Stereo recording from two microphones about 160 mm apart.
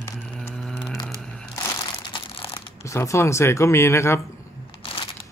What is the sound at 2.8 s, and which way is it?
Speech, 20° left (ahead or behind).